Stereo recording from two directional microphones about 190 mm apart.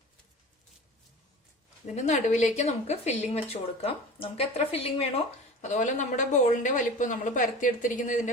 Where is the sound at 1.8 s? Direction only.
40° left (ahead or behind).